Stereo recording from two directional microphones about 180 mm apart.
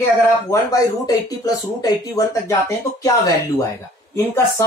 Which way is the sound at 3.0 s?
20° left (ahead or behind).